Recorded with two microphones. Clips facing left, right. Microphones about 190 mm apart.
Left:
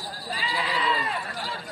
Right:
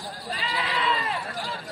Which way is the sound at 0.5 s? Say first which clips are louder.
Even; centre (ahead or behind).